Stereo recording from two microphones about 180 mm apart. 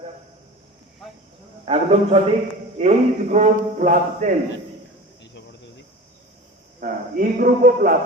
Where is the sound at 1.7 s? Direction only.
35° right (ahead or behind).